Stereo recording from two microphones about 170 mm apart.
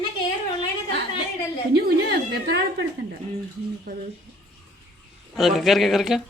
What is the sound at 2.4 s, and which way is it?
Speech, 75° right (ahead or behind).